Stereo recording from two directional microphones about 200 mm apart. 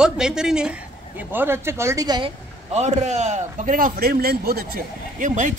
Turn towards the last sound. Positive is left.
turn(degrees=-40)  # may be behind; listen again after turning